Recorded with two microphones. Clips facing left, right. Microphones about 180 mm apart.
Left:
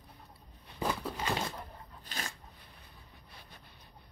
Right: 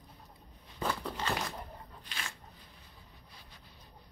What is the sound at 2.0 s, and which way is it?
Dog, 40° left (ahead or behind).